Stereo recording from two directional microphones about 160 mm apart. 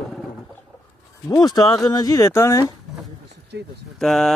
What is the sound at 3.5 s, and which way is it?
Speech, 90° right.